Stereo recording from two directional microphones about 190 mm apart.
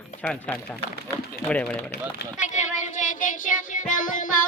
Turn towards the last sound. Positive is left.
turn(degrees=45)  # may be behind; listen again after turning